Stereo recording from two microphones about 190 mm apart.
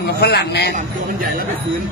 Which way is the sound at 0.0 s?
60° left (ahead or behind).